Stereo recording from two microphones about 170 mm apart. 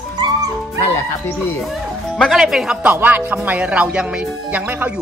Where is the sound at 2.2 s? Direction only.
Centre (ahead or behind).